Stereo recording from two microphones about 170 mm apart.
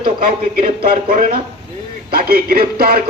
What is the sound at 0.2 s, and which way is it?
A man's voice, 65° right (ahead or behind).